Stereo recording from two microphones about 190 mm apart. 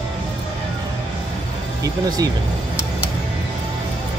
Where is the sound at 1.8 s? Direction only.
20° right (ahead or behind).